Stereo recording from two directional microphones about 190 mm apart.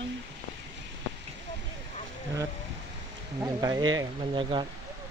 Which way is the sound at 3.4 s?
20° right (ahead or behind).